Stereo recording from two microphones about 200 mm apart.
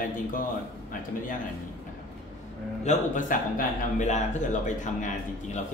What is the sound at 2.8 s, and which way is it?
Speech, 35° left (ahead or behind).